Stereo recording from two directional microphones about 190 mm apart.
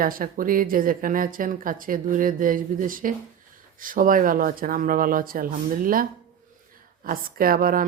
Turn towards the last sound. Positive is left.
turn(degrees=-50)  # may be behind; listen again after turning